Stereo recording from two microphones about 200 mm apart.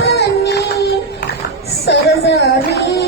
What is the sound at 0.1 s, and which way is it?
Music, 55° left (ahead or behind).